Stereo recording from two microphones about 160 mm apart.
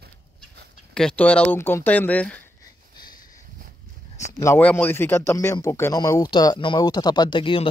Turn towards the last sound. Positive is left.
turn(degrees=35)  # may be behind; listen again after turning